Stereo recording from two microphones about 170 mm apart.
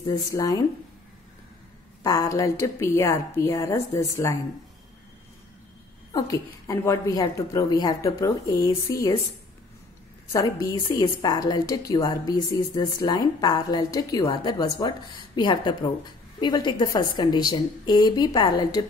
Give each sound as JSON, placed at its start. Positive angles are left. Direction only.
{"t": 0.0, "sound": "a woman's voice", "side_deg": 20}
{"t": 2.0, "sound": "a woman's voice", "side_deg": 20}
{"t": 6.1, "sound": "a woman's voice", "side_deg": 20}
{"t": 10.3, "sound": "a woman's voice", "side_deg": 20}